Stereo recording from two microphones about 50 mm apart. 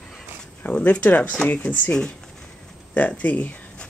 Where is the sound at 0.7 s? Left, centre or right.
Left.